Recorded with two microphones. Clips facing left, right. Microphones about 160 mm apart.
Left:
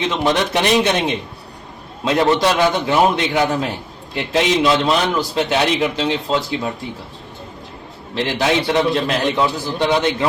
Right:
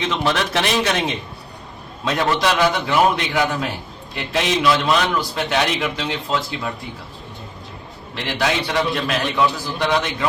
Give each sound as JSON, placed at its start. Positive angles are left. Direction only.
{"t": 0.2, "sound": "a man's voice", "side_deg": 15}
{"t": 8.4, "sound": "a man's voice", "side_deg": 25}